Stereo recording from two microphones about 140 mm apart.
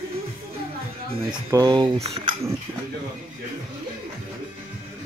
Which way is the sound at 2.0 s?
45° right (ahead or behind).